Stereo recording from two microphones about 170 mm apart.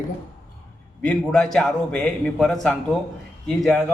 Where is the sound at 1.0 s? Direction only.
5° left (ahead or behind).